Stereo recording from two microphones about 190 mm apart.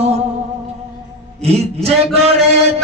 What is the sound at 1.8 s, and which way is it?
Mantra, 35° right (ahead or behind).